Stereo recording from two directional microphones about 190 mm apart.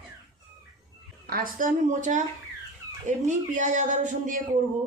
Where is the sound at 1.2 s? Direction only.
50° right (ahead or behind).